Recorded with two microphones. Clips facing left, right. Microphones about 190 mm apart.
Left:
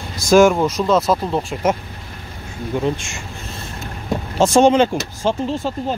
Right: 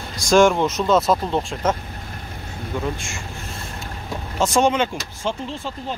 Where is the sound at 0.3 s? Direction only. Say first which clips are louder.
Left 3 dB; 5° left (ahead or behind).